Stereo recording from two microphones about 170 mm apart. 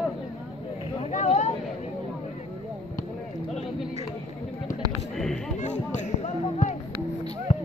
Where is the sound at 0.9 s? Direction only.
40° left (ahead or behind).